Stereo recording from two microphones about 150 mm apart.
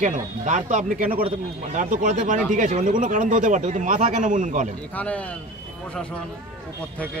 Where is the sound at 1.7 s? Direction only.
55° right (ahead or behind).